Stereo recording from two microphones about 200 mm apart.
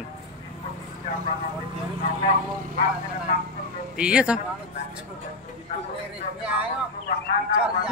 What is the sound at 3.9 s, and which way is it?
Speech, 5° right (ahead or behind).